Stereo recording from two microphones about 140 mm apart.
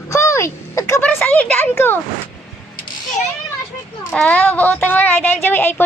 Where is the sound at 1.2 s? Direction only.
10° left (ahead or behind).